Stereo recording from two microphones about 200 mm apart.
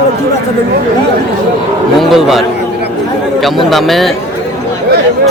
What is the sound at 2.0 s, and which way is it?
Speech, centre (ahead or behind).